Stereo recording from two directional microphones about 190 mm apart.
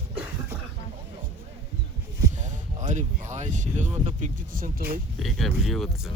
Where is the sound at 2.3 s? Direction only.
40° right (ahead or behind).